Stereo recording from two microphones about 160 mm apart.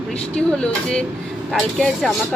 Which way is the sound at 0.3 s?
5° left (ahead or behind).